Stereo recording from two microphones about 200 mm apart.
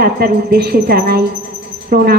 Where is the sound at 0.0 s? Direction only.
50° right (ahead or behind).